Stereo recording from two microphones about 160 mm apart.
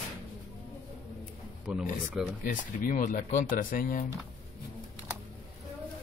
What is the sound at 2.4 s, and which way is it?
Speech, 60° left (ahead or behind).